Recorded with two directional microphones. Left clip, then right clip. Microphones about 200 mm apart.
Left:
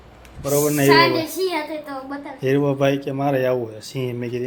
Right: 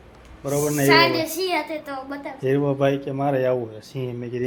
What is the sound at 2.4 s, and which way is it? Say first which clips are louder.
Speech: left 2 dB; 5° left (ahead or behind).